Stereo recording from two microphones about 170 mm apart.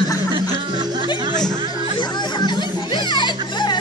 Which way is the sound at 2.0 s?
25° left (ahead or behind).